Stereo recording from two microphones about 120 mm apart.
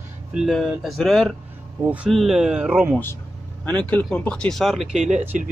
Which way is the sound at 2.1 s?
Centre (ahead or behind).